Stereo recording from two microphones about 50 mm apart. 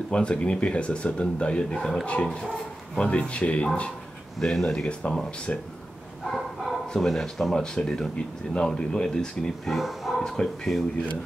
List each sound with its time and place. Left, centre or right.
0.1 s speech: centre
1.8 s speech: centre
3.0 s speech: left
4.4 s speech: centre
4.8 s speech: left
6.3 s bow-wow: centre
6.9 s speech: centre
9.8 s speech: centre
10.2 s speech: centre